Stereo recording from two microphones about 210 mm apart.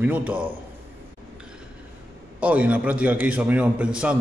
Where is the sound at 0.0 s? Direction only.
5° right (ahead or behind).